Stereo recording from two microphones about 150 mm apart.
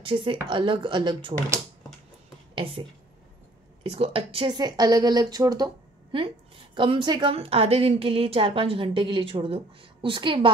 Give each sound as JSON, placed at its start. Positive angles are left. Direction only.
{"t": 0.0, "sound": "a woman's voice", "side_deg": -35}
{"t": 2.5, "sound": "speech", "side_deg": -35}
{"t": 3.9, "sound": "a woman's voice", "side_deg": -40}